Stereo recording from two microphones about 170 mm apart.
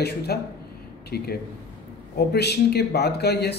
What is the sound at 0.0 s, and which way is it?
Speech, 70° left (ahead or behind).